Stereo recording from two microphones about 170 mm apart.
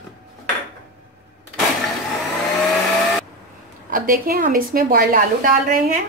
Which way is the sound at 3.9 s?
55° right (ahead or behind).